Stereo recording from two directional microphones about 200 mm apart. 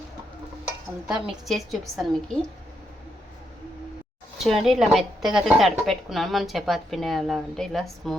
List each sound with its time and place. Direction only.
1.0 s a woman's voice: centre (ahead or behind)
4.4 s a woman's voice: centre (ahead or behind)